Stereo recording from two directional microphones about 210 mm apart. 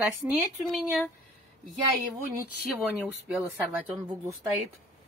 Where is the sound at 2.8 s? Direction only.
5° right (ahead or behind).